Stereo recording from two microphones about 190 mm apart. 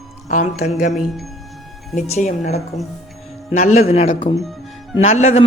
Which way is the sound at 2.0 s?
40° left (ahead or behind).